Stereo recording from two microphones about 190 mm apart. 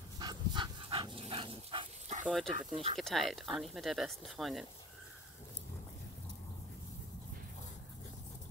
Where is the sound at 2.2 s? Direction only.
Centre (ahead or behind).